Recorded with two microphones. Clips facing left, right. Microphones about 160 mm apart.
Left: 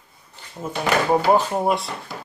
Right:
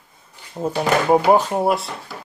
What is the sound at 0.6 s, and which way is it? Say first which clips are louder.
Speech: right 7 dB; 35° right (ahead or behind).